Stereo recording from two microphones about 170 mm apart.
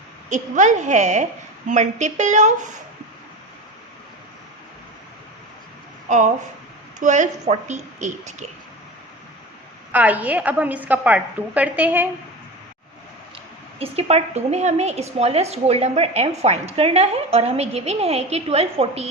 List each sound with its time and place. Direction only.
0.3 s a woman's voice: 45° right (ahead or behind)
6.1 s a woman's voice: 45° right (ahead or behind)
9.9 s a woman's voice: 10° right (ahead or behind)
13.7 s a woman's voice: 35° right (ahead or behind)